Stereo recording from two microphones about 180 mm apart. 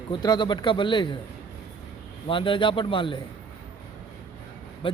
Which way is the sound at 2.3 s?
30° left (ahead or behind).